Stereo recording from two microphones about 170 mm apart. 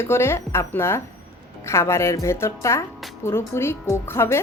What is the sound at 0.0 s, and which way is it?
Speech, 15° left (ahead or behind).